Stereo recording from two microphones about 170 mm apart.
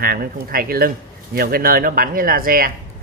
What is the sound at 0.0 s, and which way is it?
Speech, 60° right (ahead or behind).